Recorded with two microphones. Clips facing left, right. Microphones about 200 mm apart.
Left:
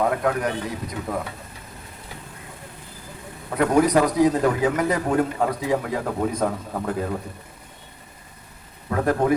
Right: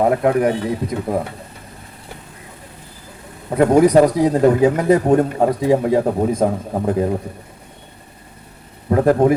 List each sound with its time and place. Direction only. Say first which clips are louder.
0.0 s speech: right 7 dB; 25° right (ahead or behind)
3.5 s a man's voice: right 7 dB; 30° right (ahead or behind)
8.9 s a man's voice: right 8 dB; 30° right (ahead or behind)